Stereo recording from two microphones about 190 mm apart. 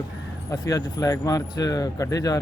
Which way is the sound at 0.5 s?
15° left (ahead or behind).